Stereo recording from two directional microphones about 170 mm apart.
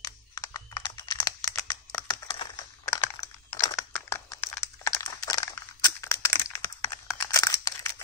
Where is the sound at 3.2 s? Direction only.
20° left (ahead or behind).